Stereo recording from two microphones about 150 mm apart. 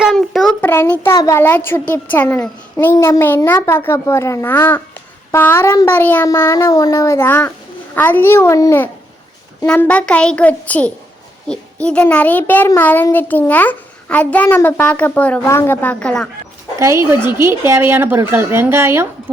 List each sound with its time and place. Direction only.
0.0 s a sound: centre (ahead or behind)
0.6 s a child's voice: 15° left (ahead or behind)
16.8 s speech: 20° right (ahead or behind)